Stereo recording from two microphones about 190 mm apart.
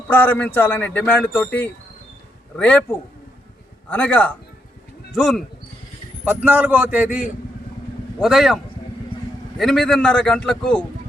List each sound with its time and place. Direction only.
0.1 s a man's voice: 10° left (ahead or behind)
6.2 s a man's voice: 10° right (ahead or behind)